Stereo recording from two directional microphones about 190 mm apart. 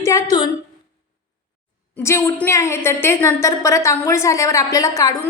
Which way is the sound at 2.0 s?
15° left (ahead or behind).